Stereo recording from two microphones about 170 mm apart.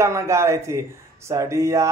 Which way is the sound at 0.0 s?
15° right (ahead or behind).